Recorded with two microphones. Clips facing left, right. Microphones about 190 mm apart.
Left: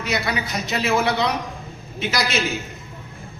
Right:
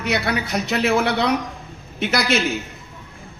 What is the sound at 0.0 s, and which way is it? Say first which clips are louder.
A man's voice: right 2 dB; 60° right (ahead or behind).